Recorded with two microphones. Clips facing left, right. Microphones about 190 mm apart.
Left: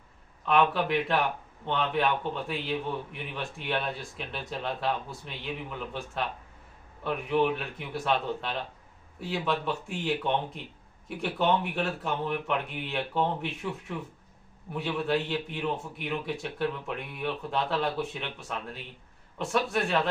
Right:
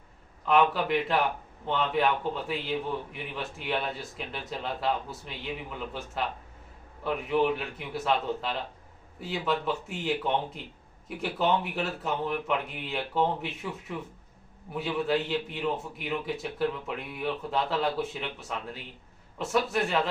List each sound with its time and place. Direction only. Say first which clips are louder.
0.4 s a man's voice: right 1 dB; centre (ahead or behind)
7.0 s a man's voice: even; centre (ahead or behind)